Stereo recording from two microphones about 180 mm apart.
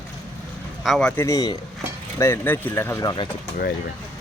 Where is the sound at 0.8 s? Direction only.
Centre (ahead or behind).